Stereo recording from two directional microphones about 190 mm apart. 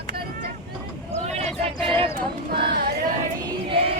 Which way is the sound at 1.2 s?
35° right (ahead or behind).